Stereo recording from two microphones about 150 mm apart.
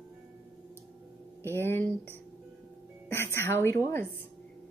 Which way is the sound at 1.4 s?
15° left (ahead or behind).